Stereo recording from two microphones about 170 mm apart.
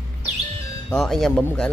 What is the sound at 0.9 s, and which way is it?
Speech, centre (ahead or behind).